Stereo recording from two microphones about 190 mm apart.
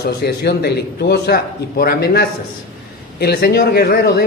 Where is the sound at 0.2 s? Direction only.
55° left (ahead or behind).